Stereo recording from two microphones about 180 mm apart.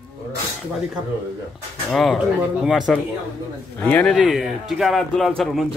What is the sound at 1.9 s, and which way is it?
Speech, centre (ahead or behind).